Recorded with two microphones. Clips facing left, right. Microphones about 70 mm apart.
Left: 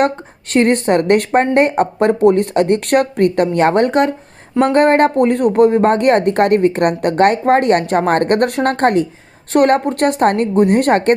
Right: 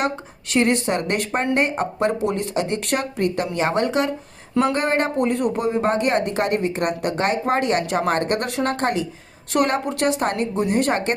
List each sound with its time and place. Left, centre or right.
0.5 s speech: left